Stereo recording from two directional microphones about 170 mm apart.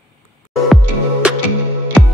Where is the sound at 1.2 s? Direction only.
5° right (ahead or behind).